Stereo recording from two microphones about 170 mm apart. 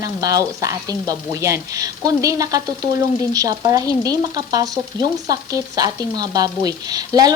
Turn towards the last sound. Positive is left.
turn(degrees=-20)  # may be behind; listen again after turning